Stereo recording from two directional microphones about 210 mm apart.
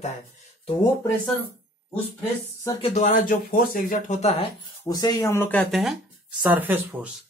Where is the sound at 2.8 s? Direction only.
35° left (ahead or behind).